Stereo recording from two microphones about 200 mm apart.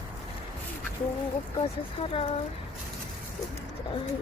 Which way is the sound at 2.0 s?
30° left (ahead or behind).